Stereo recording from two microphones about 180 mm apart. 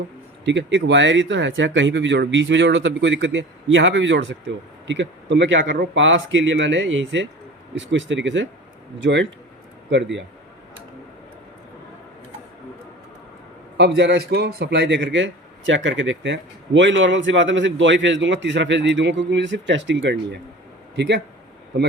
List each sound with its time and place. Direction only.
0.4 s speech: 80° right
13.7 s speech: 70° right (ahead or behind)